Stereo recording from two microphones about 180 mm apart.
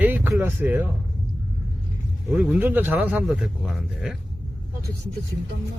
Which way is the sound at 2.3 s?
10° right (ahead or behind).